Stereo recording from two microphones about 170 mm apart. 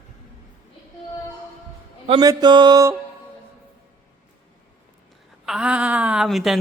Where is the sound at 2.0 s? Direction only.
25° right (ahead or behind).